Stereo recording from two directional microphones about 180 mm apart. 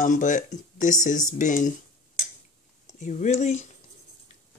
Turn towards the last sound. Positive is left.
turn(degrees=40)  # may be behind; listen again after turning